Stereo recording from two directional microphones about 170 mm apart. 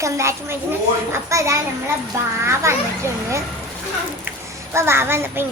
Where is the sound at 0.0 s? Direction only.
15° right (ahead or behind).